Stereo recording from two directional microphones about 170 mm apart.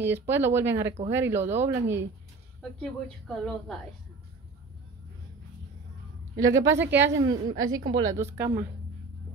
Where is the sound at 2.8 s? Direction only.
5° left (ahead or behind).